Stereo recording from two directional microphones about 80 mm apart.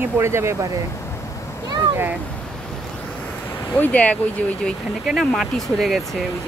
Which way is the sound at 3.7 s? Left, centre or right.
Centre.